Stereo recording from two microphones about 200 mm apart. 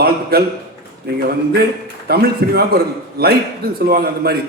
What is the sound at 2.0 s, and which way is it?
A man's voice, 50° right (ahead or behind).